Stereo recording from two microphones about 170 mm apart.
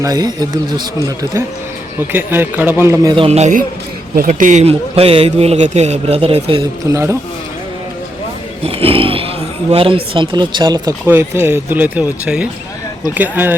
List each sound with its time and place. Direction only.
0.0 s speech: 20° right (ahead or behind)
3.2 s a man's voice: 40° right (ahead or behind)
4.1 s a man's voice: 55° right (ahead or behind); by 6.6 s 35° right (ahead or behind)
6.8 s speech: 15° right (ahead or behind)
8.6 s speech: 35° right (ahead or behind)
11.0 s speech: 15° right (ahead or behind)